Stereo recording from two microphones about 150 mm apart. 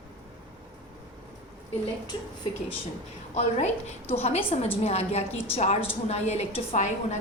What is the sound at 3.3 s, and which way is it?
A woman's voice, 45° left (ahead or behind).